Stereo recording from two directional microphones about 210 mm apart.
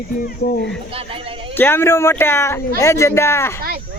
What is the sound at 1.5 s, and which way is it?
Speech, 10° left (ahead or behind).